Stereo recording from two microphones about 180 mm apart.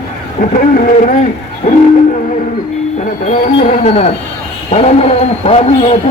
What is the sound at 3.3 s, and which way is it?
A man's voice, 35° left (ahead or behind).